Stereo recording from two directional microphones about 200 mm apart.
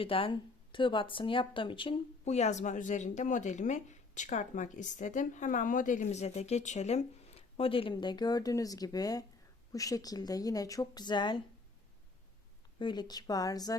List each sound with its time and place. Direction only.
0.0 s speech: 25° left (ahead or behind)
12.8 s speech: 20° left (ahead or behind)